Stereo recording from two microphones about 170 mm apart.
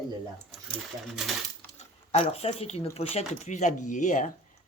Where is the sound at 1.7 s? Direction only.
40° left (ahead or behind).